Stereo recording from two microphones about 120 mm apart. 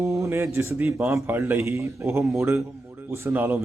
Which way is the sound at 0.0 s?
25° right (ahead or behind).